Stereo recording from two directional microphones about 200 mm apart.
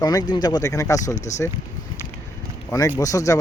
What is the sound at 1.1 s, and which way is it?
Speech, 35° left (ahead or behind).